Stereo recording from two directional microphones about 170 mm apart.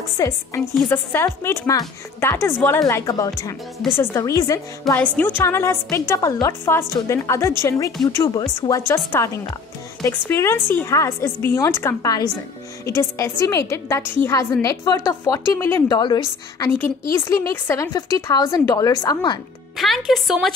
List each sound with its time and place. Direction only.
0.2 s speech: 20° left (ahead or behind)
0.6 s a woman's voice: 5° left (ahead or behind)
4.8 s a woman's voice: 5° left (ahead or behind); by 16.6 s 25° left (ahead or behind)
16.8 s speech: 15° left (ahead or behind)
19.8 s a woman's voice: centre (ahead or behind)